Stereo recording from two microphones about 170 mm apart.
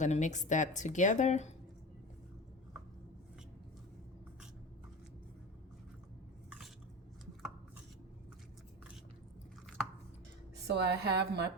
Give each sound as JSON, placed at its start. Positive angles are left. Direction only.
{"t": 0.0, "sound": "speech", "side_deg": 45}
{"t": 10.7, "sound": "a woman's voice", "side_deg": -75}